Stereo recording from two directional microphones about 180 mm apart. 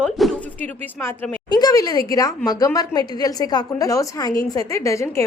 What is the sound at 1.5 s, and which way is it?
A woman's voice, 20° left (ahead or behind).